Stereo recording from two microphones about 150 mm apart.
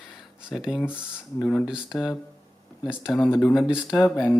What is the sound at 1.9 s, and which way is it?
Speech, centre (ahead or behind).